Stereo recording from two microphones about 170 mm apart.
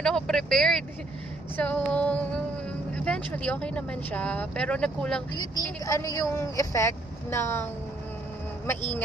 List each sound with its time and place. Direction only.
0.0 s speech: 5° left (ahead or behind)
5.9 s speech: 20° left (ahead or behind)
8.6 s speech: 10° left (ahead or behind)